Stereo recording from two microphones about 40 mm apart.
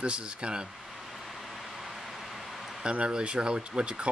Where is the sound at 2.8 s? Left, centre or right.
Right.